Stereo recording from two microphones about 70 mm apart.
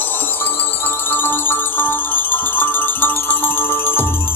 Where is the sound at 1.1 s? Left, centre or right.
Left.